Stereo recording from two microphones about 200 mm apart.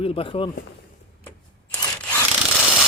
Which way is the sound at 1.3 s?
10° left (ahead or behind).